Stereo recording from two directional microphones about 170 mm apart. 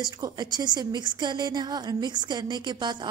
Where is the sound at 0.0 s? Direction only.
25° right (ahead or behind).